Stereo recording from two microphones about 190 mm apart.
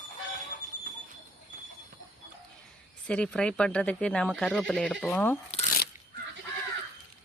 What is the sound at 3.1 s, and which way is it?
Speech, 5° left (ahead or behind).